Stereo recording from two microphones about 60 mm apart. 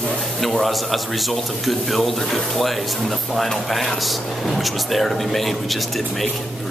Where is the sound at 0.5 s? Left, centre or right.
Centre.